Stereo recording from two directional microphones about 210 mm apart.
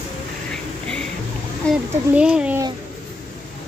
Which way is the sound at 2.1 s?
5° right (ahead or behind).